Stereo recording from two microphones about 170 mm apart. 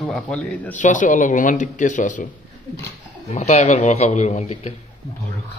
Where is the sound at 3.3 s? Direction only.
40° left (ahead or behind).